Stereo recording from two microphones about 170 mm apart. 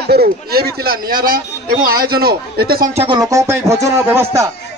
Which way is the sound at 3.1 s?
20° right (ahead or behind).